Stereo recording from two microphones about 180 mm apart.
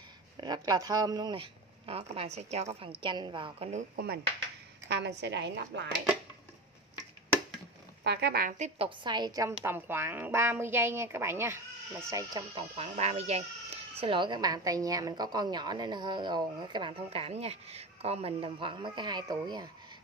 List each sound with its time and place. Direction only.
0.4 s a woman's voice: 20° right (ahead or behind)
3.9 s speech: 60° right (ahead or behind)
4.8 s a woman's voice: 75° right (ahead or behind)
8.0 s a woman's voice: 65° right (ahead or behind); by 12.6 s 20° right (ahead or behind)
12.7 s a woman's voice: 35° right (ahead or behind)